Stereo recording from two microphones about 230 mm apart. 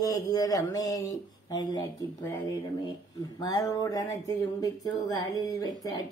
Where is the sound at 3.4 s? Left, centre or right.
Centre.